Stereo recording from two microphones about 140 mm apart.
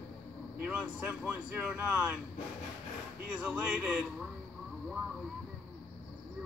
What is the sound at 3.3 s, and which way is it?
Speech, 5° right (ahead or behind).